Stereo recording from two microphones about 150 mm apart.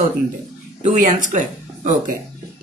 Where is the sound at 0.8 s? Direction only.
55° right (ahead or behind).